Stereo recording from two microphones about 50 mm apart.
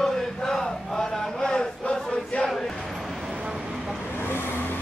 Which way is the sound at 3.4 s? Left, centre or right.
Centre.